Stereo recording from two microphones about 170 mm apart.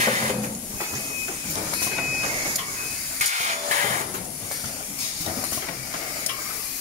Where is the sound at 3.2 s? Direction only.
45° right (ahead or behind).